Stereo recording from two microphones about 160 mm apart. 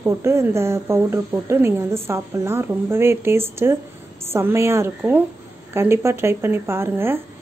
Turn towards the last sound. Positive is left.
turn(degrees=-15)  # may be behind; listen again after turning